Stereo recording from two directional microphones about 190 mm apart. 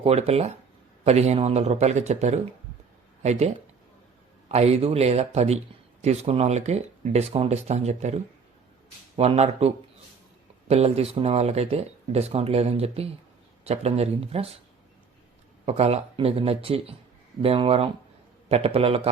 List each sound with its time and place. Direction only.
0.0 s speech: 30° right (ahead or behind)
15.6 s speech: 35° right (ahead or behind)